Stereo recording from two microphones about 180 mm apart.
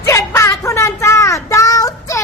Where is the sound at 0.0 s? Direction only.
20° left (ahead or behind).